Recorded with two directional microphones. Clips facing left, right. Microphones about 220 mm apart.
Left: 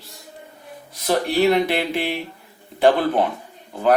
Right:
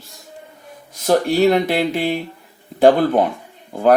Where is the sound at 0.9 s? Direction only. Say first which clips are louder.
Right 4 dB; 45° right (ahead or behind).